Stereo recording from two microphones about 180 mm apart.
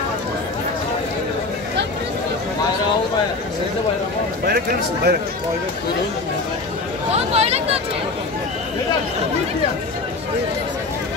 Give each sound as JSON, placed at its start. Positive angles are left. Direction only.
{"t": 4.5, "sound": "speech", "side_deg": -60}
{"t": 7.1, "sound": "speech", "side_deg": -35}